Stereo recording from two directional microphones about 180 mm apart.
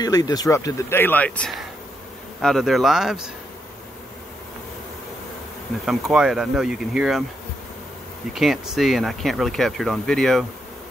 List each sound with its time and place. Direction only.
0.0 s speech: 20° left (ahead or behind); by 3.3 s centre (ahead or behind)
5.9 s speech: centre (ahead or behind)
8.3 s speech: centre (ahead or behind)